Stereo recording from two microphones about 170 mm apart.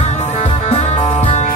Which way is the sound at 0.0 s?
40° left (ahead or behind).